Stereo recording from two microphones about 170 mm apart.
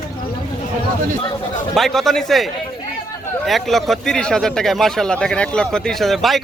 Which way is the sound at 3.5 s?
Centre (ahead or behind).